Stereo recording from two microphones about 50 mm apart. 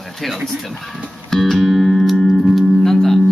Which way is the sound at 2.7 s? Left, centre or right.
Centre.